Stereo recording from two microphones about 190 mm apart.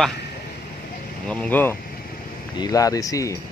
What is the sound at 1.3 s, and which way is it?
Speech, 10° left (ahead or behind).